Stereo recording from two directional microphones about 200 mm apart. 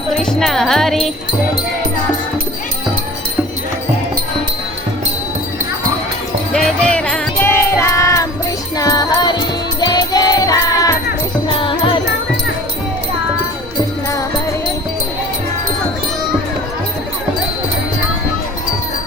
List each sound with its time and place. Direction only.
0.2 s music: 5° left (ahead or behind)
6.5 s music: 5° left (ahead or behind); by 11.9 s 25° left (ahead or behind)